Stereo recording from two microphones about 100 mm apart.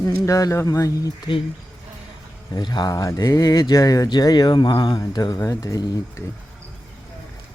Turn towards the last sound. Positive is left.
turn(degrees=35)  # may be behind; listen again after turning